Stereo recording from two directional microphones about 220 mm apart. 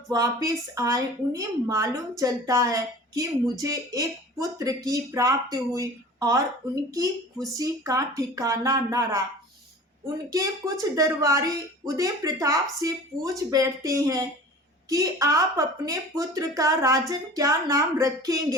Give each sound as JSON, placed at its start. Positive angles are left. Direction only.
{"t": 0.1, "sound": "speech", "side_deg": -15}
{"t": 10.2, "sound": "speech", "side_deg": -15}